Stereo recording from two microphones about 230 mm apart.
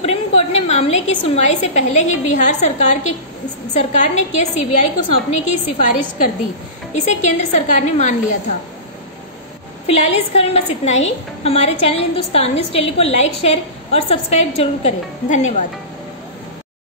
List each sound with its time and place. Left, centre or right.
0.0 s a woman's voice: left
9.8 s a woman's voice: left